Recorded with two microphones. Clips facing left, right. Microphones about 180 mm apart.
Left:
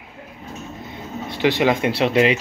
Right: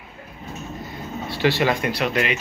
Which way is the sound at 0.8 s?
20° left (ahead or behind).